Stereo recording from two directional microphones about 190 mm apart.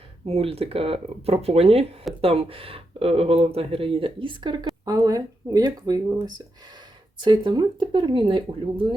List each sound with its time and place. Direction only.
0.3 s speech: 30° right (ahead or behind)